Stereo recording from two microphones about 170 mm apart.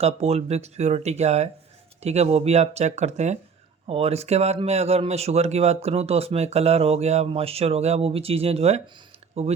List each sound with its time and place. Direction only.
0.0 s speech: 35° right (ahead or behind)